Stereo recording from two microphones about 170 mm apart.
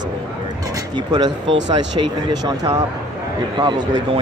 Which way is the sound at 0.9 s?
25° right (ahead or behind).